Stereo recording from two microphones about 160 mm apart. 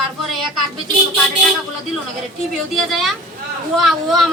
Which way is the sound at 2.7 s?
Centre (ahead or behind).